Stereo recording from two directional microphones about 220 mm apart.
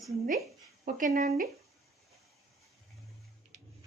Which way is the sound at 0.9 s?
35° right (ahead or behind).